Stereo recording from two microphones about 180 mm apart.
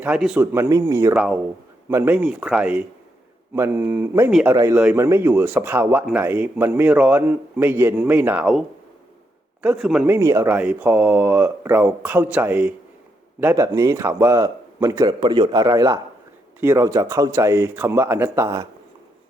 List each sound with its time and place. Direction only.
0.0 s speech: 5° right (ahead or behind)
0.5 s speech: 15° right (ahead or behind)
1.1 s a man's voice: 5° right (ahead or behind)
4.3 s a man's voice: centre (ahead or behind)
4.5 s a man's voice: 15° right (ahead or behind)
10.2 s speech: 15° right (ahead or behind)